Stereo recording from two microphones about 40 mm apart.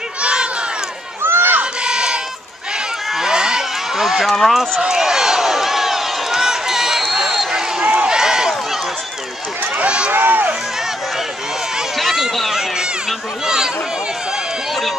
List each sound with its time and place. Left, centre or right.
0.2 s crowd: right
1.2 s crowd: right
1.6 s crowd: right
3.3 s run: centre
4.0 s speech: centre
4.7 s a sound: centre
7.8 s a sound: right
8.2 s run: centre
9.8 s run: right
10.1 s speech: right
12.0 s run: centre